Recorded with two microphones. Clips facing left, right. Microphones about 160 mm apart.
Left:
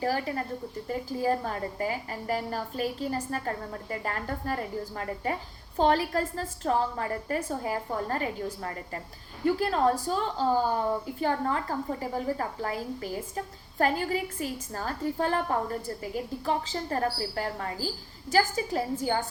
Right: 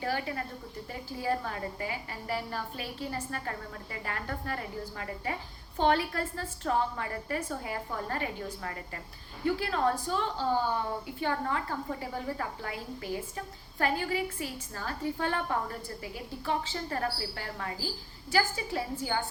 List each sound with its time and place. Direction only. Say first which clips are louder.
0.0 s a woman's voice: left 4 dB; 35° left (ahead or behind)